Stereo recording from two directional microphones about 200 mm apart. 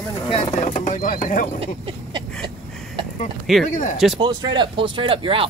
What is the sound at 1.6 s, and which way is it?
Speech, 25° right (ahead or behind).